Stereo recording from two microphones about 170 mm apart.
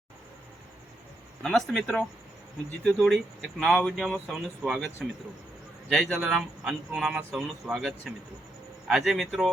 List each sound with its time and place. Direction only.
1.4 s speech: 5° left (ahead or behind)
6.1 s speech: 5° right (ahead or behind)